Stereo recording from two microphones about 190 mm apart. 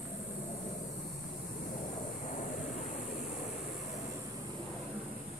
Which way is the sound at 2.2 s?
45° left (ahead or behind).